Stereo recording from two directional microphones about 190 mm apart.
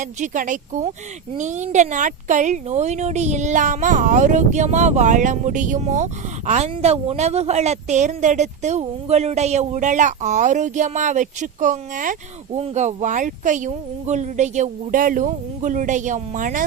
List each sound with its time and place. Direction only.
0.0 s a woman's voice: 40° right (ahead or behind)